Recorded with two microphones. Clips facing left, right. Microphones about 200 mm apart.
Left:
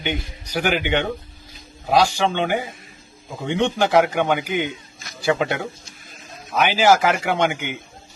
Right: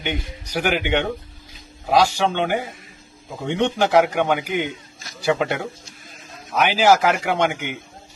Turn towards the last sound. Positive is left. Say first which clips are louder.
# even
turn(degrees=0)  # may be behind; listen again after turning